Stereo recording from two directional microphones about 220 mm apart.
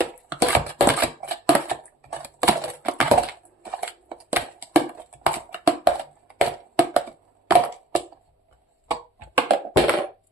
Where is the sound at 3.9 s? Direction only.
10° right (ahead or behind).